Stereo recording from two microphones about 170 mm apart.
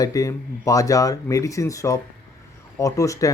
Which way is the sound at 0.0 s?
20° left (ahead or behind).